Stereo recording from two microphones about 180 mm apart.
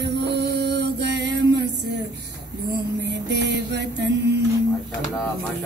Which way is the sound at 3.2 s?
70° right (ahead or behind).